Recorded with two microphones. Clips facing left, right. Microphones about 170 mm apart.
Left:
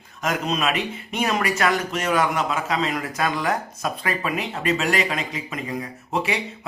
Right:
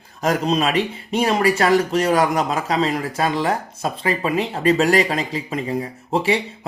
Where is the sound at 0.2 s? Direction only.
35° right (ahead or behind).